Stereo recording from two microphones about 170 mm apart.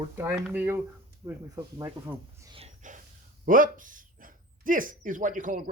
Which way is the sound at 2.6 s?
45° right (ahead or behind).